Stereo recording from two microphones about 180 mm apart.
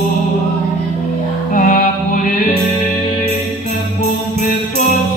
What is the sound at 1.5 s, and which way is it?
Music, 45° left (ahead or behind).